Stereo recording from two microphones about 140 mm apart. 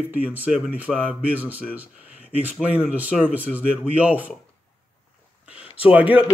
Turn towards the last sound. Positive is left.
turn(degrees=-10)  # may be behind; listen again after turning